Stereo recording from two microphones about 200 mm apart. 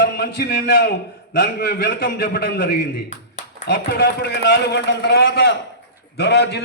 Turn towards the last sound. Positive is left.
turn(degrees=55)  # may be behind; listen again after turning